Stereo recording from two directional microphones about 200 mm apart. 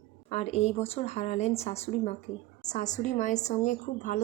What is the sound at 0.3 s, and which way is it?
A woman's voice, 30° left (ahead or behind).